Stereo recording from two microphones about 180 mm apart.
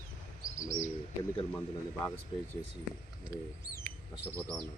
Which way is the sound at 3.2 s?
20° left (ahead or behind).